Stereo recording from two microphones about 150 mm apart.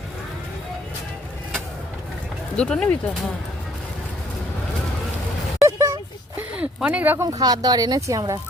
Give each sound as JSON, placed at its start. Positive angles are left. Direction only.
{"t": 2.6, "sound": "speech", "side_deg": 5}
{"t": 5.6, "sound": "a sound", "side_deg": -20}
{"t": 6.6, "sound": "speech", "side_deg": -10}
{"t": 7.3, "sound": "speech", "side_deg": -25}